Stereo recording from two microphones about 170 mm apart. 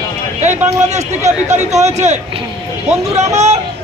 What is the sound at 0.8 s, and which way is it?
Speech, 40° right (ahead or behind).